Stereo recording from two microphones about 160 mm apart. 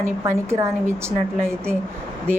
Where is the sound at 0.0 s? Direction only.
15° right (ahead or behind).